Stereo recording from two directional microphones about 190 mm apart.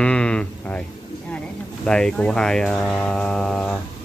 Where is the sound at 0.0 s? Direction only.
5° left (ahead or behind).